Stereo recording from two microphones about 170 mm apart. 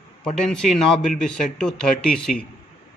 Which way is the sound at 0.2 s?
5° left (ahead or behind).